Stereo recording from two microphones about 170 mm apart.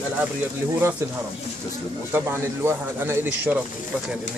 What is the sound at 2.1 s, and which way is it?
Speech, 15° right (ahead or behind).